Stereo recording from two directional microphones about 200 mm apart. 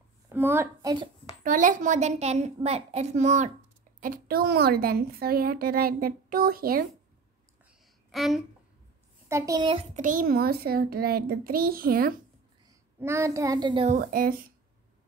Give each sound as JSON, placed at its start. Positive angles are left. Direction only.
{"t": 0.3, "sound": "a woman's voice", "side_deg": -10}
{"t": 1.4, "sound": "a woman's voice", "side_deg": -40}
{"t": 4.0, "sound": "a woman's voice", "side_deg": -45}
{"t": 8.1, "sound": "speech", "side_deg": 0}
{"t": 9.3, "sound": "a child's voice", "side_deg": -20}
{"t": 9.9, "sound": "a woman's voice", "side_deg": -40}
{"t": 13.0, "sound": "a child's voice", "side_deg": -15}
{"t": 13.8, "sound": "a woman's voice", "side_deg": -40}